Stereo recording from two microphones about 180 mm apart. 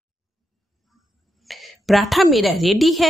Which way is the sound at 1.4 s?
Centre (ahead or behind).